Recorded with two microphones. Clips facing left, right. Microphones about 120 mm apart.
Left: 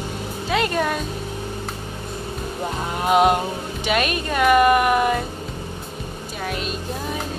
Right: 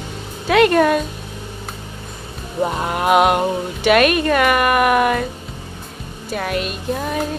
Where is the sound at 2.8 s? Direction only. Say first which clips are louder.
Right 2 dB; 65° right (ahead or behind).